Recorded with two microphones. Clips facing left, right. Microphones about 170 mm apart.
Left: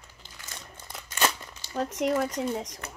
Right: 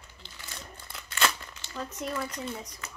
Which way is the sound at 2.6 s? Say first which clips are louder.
Left 4 dB; 90° left.